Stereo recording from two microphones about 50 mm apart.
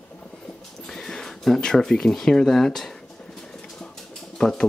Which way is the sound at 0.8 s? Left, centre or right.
Centre.